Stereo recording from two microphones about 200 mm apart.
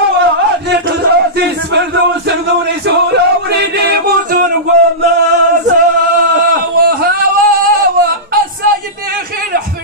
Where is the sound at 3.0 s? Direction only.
55° right (ahead or behind).